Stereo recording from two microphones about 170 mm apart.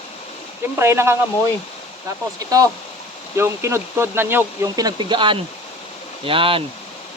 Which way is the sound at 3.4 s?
15° right (ahead or behind).